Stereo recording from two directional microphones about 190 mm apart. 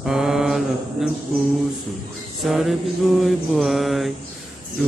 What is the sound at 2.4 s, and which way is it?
Mantra, centre (ahead or behind).